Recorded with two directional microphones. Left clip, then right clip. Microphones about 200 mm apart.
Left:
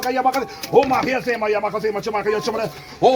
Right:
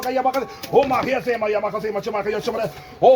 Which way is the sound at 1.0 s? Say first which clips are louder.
Left 1 dB; 30° right (ahead or behind).